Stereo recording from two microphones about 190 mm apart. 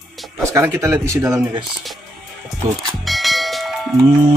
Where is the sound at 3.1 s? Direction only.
Centre (ahead or behind).